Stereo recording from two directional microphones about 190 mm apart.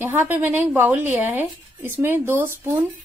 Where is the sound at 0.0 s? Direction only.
10° right (ahead or behind).